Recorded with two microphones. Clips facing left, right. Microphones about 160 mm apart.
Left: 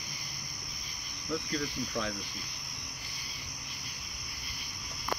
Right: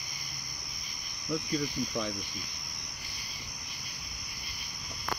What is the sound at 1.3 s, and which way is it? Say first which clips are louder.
Cricket: right 2 dB; 15° right (ahead or behind).